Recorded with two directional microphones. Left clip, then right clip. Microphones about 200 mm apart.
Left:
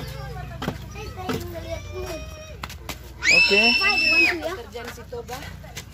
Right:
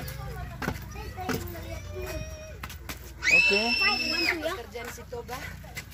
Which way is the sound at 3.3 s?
5° left (ahead or behind).